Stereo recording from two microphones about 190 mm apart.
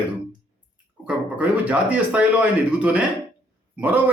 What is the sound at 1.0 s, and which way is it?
Speech, 5° right (ahead or behind).